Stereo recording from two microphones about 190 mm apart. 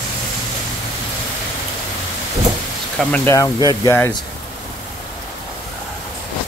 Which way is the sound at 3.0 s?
5° left (ahead or behind).